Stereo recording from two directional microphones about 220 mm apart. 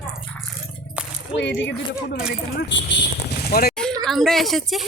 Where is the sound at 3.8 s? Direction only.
Centre (ahead or behind).